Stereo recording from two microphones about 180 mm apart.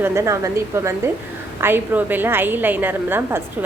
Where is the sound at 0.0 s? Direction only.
15° right (ahead or behind).